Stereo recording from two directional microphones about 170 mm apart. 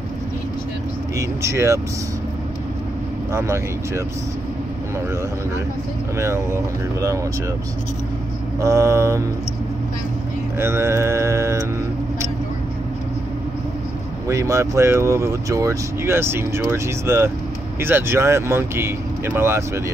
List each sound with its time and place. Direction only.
1.1 s speech: 15° right (ahead or behind)
3.3 s speech: 15° right (ahead or behind)
6.1 s speech: 15° right (ahead or behind)
8.5 s speech: 20° right (ahead or behind)
10.6 s speech: 15° right (ahead or behind)
14.2 s speech: 20° right (ahead or behind)